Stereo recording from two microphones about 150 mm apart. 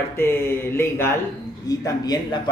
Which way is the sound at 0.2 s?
15° left (ahead or behind).